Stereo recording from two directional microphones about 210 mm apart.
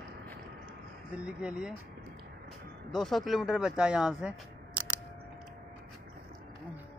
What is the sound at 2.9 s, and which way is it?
Speech, centre (ahead or behind).